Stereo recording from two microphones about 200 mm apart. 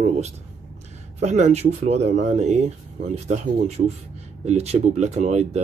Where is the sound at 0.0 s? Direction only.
35° right (ahead or behind).